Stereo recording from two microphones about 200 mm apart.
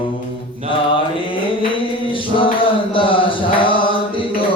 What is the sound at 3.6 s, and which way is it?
Mantra, 25° left (ahead or behind).